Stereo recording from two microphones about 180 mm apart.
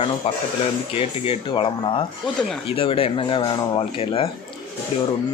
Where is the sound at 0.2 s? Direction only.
35° left (ahead or behind).